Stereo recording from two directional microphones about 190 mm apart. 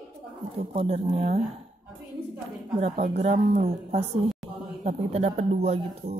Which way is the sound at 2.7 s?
30° right (ahead or behind).